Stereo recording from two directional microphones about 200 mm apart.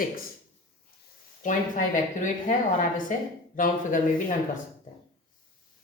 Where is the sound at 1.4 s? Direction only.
40° left (ahead or behind).